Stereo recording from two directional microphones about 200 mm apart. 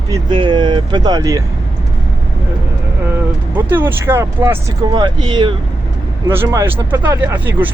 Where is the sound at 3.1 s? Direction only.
10° right (ahead or behind).